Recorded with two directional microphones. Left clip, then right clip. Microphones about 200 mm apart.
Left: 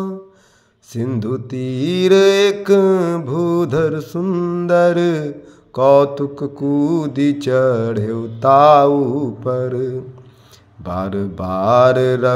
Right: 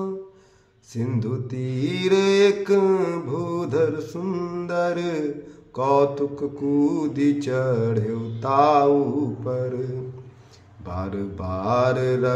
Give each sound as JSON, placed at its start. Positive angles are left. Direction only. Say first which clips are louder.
{"t": 0.9, "sound": "mantra", "louder": "left 7 dB", "side_deg": 35}